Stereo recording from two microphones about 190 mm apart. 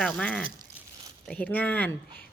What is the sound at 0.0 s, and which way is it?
A woman's voice, 5° left (ahead or behind).